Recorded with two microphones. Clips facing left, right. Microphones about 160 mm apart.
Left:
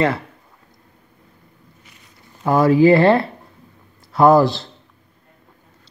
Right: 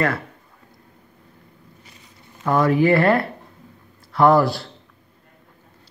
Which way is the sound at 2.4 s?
30° left (ahead or behind).